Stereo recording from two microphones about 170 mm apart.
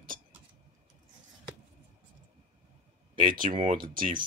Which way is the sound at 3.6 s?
50° right (ahead or behind).